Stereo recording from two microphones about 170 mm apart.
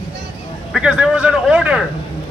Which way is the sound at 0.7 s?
5° right (ahead or behind).